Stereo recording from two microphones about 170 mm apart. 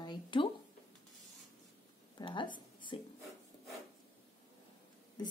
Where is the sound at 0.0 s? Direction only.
25° left (ahead or behind).